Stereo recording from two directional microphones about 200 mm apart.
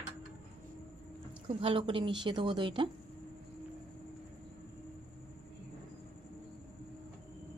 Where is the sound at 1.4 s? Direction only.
25° right (ahead or behind).